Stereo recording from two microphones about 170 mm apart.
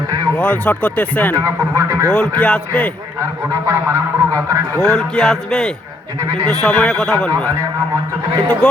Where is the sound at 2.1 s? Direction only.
5° left (ahead or behind).